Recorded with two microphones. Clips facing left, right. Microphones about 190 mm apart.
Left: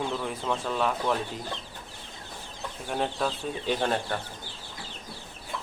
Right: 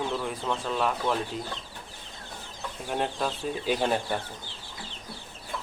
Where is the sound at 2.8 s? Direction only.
Centre (ahead or behind).